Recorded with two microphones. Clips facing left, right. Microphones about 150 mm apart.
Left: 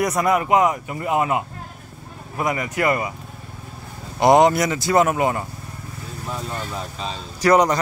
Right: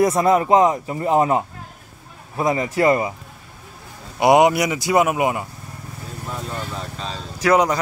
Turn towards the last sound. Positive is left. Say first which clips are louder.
# left 1 dB
turn(degrees=-5)  # may be behind; listen again after turning